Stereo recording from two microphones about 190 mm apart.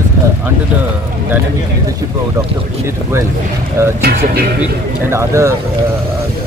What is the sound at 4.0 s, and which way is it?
Speech, 55° right (ahead or behind).